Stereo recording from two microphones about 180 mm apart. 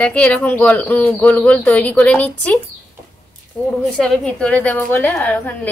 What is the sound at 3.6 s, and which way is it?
A woman's voice, 5° left (ahead or behind).